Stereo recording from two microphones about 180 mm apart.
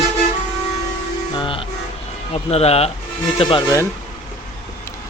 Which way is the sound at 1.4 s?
30° left (ahead or behind).